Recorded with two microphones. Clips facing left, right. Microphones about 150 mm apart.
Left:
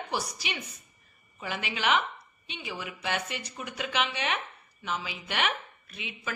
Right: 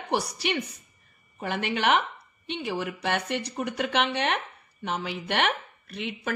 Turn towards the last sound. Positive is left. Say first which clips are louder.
# right 8 dB
turn(degrees=-65)  # may be behind; listen again after turning